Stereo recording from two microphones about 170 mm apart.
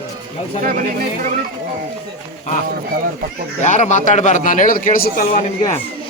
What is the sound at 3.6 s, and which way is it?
A man's voice, 45° left (ahead or behind).